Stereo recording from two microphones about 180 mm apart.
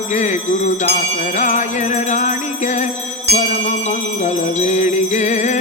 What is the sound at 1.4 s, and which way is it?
Jingle bell, 40° left (ahead or behind).